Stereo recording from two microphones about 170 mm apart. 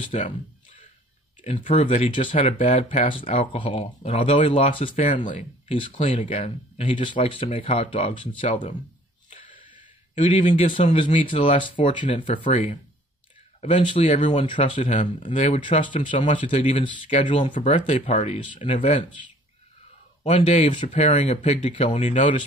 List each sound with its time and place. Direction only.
0.1 s speech: 45° left (ahead or behind)
1.4 s speech: 35° left (ahead or behind)
5.9 s speech: 45° left (ahead or behind)
9.8 s a sound: 45° left (ahead or behind)
10.8 s speech: 35° left (ahead or behind)
17.1 s speech: 45° left (ahead or behind)
20.2 s speech: 40° left (ahead or behind)